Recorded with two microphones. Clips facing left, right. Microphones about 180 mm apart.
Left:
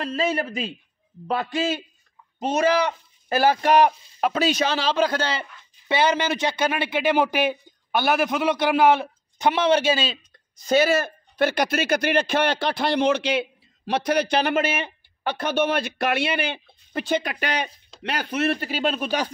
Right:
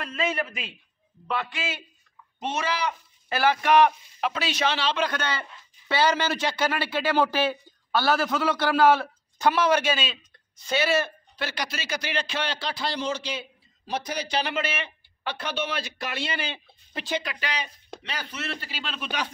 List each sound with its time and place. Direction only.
0.0 s speech: 35° left (ahead or behind)
10.6 s speech: 45° left (ahead or behind)